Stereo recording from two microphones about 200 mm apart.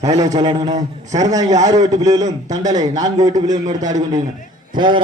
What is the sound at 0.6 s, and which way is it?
Speech, 35° right (ahead or behind).